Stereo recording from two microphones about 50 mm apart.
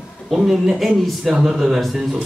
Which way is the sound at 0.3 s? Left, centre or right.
Centre.